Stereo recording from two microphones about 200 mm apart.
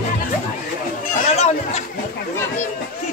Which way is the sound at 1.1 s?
35° left (ahead or behind).